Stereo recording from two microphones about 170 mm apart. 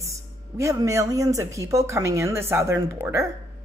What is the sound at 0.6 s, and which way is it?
Speech, 20° right (ahead or behind).